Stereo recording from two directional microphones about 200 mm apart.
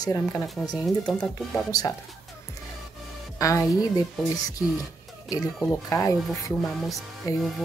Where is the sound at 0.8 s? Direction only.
5° left (ahead or behind).